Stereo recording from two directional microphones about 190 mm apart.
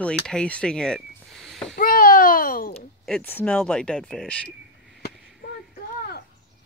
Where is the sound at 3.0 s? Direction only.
5° left (ahead or behind).